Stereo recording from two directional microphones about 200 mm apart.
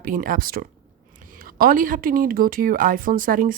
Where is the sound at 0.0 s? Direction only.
45° right (ahead or behind).